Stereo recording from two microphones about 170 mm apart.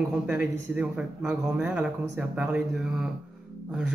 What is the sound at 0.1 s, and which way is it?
A man's voice, 10° right (ahead or behind).